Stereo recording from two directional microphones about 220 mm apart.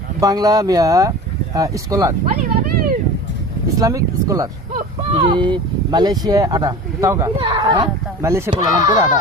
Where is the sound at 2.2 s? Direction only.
35° right (ahead or behind).